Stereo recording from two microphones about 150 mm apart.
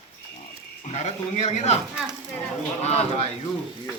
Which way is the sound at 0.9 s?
45° left (ahead or behind).